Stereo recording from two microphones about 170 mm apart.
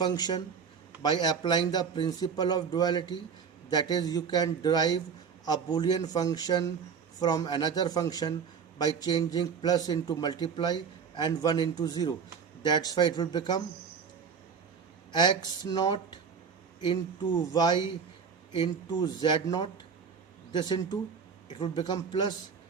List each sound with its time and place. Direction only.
0.0 s a man's voice: 25° left (ahead or behind)
15.1 s a man's voice: 25° left (ahead or behind)